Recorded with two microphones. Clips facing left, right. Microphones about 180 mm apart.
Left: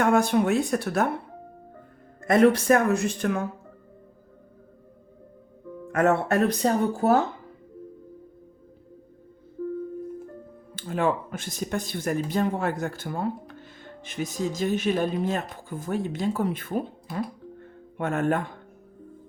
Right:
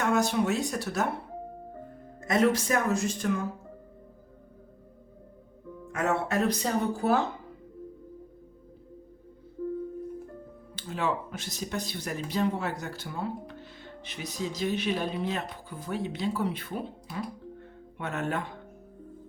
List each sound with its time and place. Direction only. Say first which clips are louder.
0.0 s speech: left 5 dB; 55° left (ahead or behind)
2.2 s speech: left 6 dB; 55° left (ahead or behind)
5.9 s speech: left 6 dB; 55° left (ahead or behind)
10.8 s speech: left 5 dB; 50° left (ahead or behind)